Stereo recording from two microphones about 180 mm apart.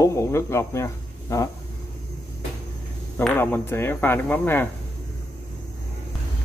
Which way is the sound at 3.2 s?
10° left (ahead or behind).